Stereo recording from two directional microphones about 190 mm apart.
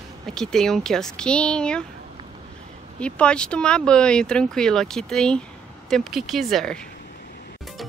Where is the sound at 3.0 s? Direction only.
5° left (ahead or behind).